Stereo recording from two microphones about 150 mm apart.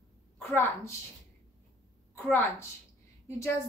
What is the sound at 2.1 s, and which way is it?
Speech, 15° left (ahead or behind).